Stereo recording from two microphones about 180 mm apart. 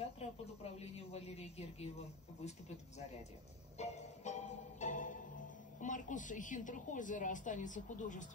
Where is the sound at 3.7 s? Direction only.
40° left (ahead or behind).